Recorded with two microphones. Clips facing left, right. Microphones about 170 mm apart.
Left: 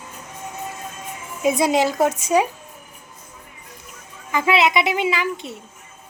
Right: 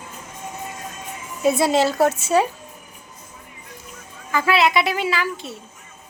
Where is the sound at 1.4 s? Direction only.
15° left (ahead or behind).